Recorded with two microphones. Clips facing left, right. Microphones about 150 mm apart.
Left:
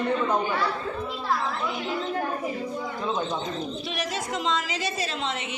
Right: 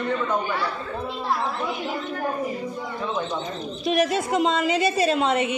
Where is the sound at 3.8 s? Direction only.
55° right (ahead or behind).